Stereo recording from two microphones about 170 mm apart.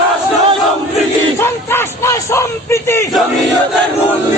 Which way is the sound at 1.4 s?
15° left (ahead or behind).